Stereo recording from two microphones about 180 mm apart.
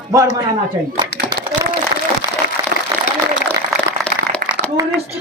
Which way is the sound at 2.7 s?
65° right (ahead or behind).